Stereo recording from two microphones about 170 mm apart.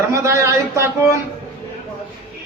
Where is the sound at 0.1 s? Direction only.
15° right (ahead or behind).